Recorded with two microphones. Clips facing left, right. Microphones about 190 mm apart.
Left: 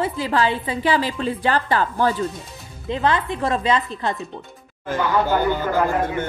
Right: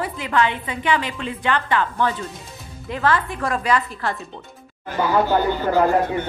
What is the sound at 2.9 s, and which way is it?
A woman's voice, 20° left (ahead or behind).